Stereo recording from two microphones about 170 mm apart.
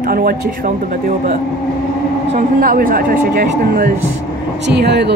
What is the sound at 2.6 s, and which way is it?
Speech, 55° right (ahead or behind).